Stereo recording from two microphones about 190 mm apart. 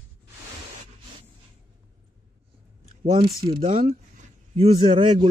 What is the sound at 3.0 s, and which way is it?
A man's voice, 30° right (ahead or behind).